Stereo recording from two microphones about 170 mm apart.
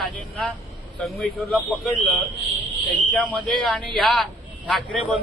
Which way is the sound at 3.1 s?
5° left (ahead or behind).